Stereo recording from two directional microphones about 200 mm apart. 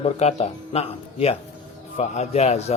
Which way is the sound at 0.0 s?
35° left (ahead or behind).